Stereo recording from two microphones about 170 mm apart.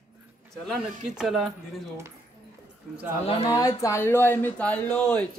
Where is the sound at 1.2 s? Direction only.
Centre (ahead or behind).